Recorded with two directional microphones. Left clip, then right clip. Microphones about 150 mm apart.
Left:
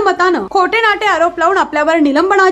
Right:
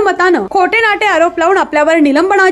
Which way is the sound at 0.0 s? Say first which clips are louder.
Right 2 dB; 20° right (ahead or behind).